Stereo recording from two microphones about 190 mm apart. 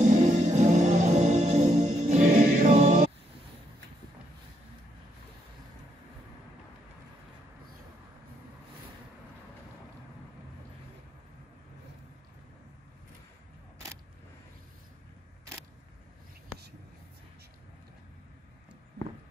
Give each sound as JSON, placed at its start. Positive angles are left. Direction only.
{"t": 0.0, "sound": "music", "side_deg": -40}